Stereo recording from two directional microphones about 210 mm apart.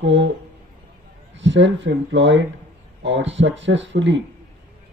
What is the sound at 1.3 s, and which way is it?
Speech, 60° right (ahead or behind).